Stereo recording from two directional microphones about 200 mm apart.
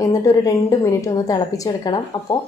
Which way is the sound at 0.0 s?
15° left (ahead or behind).